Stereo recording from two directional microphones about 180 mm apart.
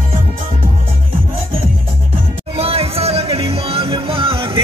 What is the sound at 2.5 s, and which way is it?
Music, 35° right (ahead or behind).